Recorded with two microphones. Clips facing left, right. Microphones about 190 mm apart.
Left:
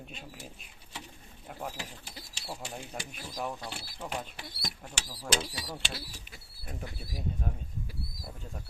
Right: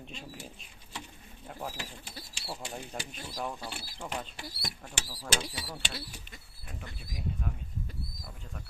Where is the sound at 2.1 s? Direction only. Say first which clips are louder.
Even; 20° left (ahead or behind).